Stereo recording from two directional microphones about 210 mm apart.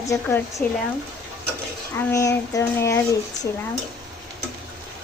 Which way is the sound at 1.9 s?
15° left (ahead or behind).